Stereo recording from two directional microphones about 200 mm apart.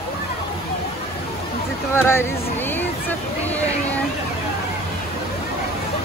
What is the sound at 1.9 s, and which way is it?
Speech, 10° left (ahead or behind).